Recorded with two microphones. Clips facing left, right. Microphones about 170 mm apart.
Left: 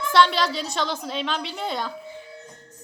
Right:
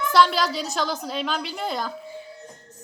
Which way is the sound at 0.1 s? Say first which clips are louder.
Even; centre (ahead or behind).